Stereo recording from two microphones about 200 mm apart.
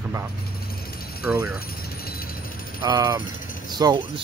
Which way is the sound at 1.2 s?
10° right (ahead or behind).